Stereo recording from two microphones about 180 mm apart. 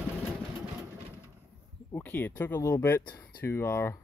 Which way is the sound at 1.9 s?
10° left (ahead or behind).